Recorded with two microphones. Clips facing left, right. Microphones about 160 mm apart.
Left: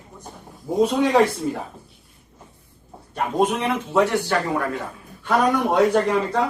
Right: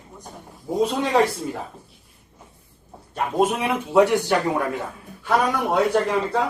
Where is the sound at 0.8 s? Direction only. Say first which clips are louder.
Left 3 dB; centre (ahead or behind).